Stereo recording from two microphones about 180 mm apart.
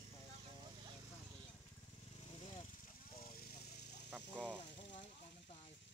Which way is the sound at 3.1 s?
55° left (ahead or behind).